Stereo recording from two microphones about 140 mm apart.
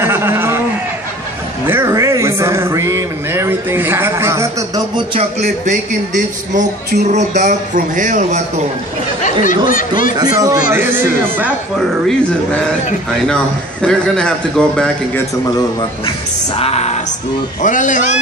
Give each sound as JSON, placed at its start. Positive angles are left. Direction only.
{"t": 0.0, "sound": "a sound", "side_deg": -15}
{"t": 1.7, "sound": "a sound", "side_deg": -20}
{"t": 5.4, "sound": "speech", "side_deg": -65}
{"t": 9.2, "sound": "speech", "side_deg": 70}
{"t": 10.1, "sound": "speech", "side_deg": -25}
{"t": 10.7, "sound": "a man's voice", "side_deg": -15}
{"t": 13.3, "sound": "a man's voice", "side_deg": 5}
{"t": 16.5, "sound": "music", "side_deg": 50}
{"t": 17.6, "sound": "speech", "side_deg": 65}